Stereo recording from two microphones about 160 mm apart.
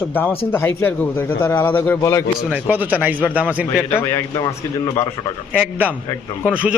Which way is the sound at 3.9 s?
15° left (ahead or behind).